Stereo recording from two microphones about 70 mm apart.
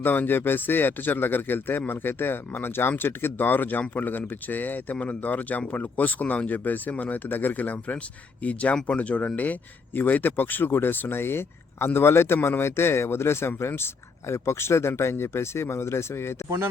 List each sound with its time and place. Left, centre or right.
0.0 s a man's voice: left